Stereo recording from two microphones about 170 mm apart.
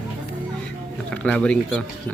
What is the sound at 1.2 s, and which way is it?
Speech, 5° left (ahead or behind).